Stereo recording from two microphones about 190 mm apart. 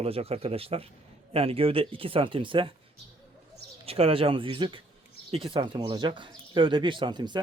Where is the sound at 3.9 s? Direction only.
30° right (ahead or behind).